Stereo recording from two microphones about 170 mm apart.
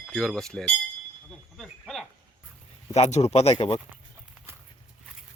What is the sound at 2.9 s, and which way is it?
Speech, 40° left (ahead or behind).